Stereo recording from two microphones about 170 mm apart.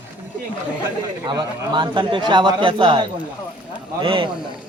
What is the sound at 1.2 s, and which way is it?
A man's voice, 25° right (ahead or behind).